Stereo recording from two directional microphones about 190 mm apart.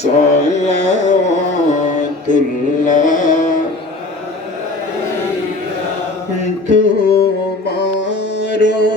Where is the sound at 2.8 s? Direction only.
45° left (ahead or behind).